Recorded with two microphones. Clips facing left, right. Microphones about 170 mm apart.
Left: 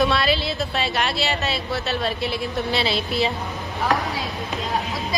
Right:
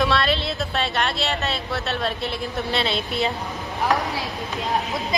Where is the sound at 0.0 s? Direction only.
5° left (ahead or behind).